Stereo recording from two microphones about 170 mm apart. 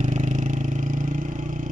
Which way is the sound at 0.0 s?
45° right (ahead or behind).